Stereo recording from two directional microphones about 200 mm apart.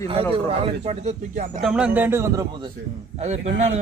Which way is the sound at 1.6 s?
5° right (ahead or behind).